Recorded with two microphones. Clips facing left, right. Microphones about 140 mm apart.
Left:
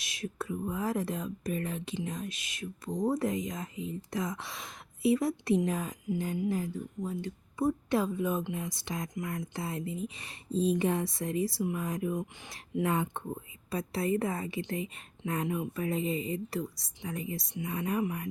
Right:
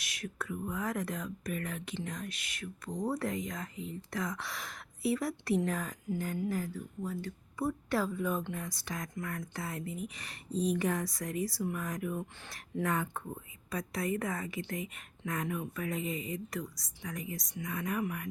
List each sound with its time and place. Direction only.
0.0 s speech: 25° left (ahead or behind)